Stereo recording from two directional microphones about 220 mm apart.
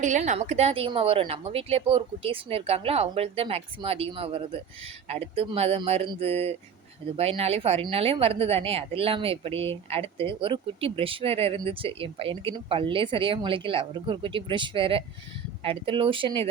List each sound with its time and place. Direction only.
0.0 s speech: 35° right (ahead or behind)